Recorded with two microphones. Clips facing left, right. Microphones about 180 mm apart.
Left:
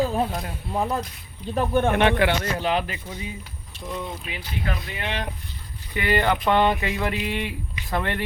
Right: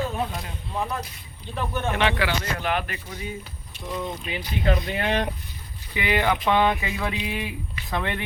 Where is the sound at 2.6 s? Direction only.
25° left (ahead or behind).